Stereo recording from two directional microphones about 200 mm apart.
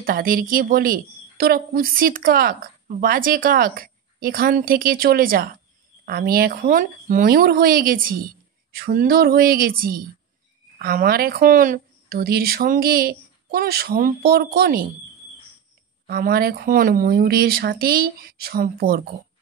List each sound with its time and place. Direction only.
0.0 s a woman's voice: 45° right (ahead or behind)
16.1 s a woman's voice: 50° right (ahead or behind)